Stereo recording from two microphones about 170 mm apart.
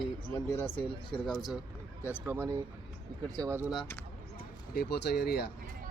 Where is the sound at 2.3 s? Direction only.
15° right (ahead or behind).